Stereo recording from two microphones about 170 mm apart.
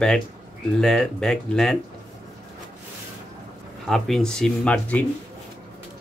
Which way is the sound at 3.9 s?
Centre (ahead or behind).